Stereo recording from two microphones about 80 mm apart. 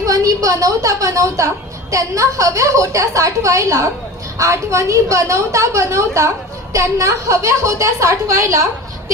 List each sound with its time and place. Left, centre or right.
0.0 s a woman's voice: right